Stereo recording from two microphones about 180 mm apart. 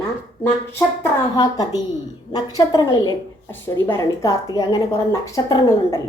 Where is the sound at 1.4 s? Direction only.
20° left (ahead or behind).